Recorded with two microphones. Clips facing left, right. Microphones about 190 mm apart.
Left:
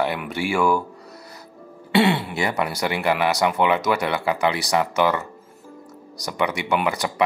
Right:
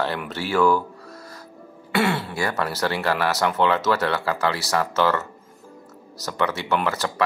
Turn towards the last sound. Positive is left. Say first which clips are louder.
# left 2 dB
turn(degrees=15)  # may be behind; listen again after turning